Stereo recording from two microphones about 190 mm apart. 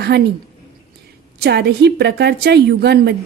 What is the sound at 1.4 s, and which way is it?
A woman's voice, 60° right (ahead or behind).